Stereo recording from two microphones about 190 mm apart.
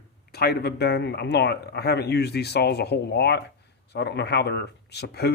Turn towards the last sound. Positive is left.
turn(degrees=60)  # may be behind; listen again after turning